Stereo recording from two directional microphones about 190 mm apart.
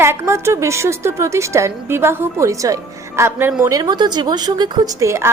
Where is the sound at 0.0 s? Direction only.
15° right (ahead or behind).